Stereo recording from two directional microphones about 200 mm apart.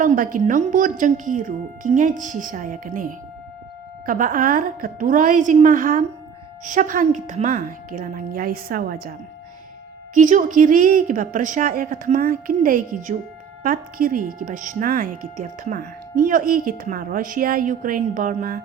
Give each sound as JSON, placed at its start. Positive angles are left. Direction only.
{"t": 0.0, "sound": "a woman's voice", "side_deg": -40}
{"t": 10.2, "sound": "a woman's voice", "side_deg": -40}